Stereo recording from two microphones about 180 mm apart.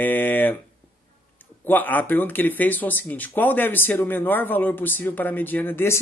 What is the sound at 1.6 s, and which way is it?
Speech, 10° left (ahead or behind).